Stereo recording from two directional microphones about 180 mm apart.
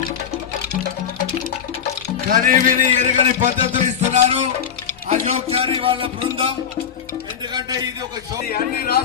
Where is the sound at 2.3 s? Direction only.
50° right (ahead or behind); by 6.5 s 30° right (ahead or behind).